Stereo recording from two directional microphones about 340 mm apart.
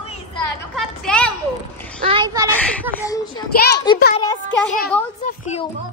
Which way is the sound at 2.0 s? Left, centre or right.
Centre.